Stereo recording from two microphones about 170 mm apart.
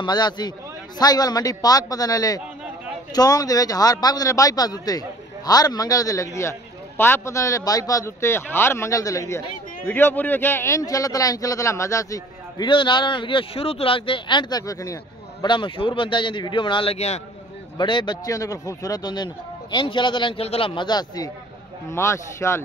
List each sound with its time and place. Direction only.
0.0 s a man's voice: 25° left (ahead or behind)
17.7 s a man's voice: 25° left (ahead or behind)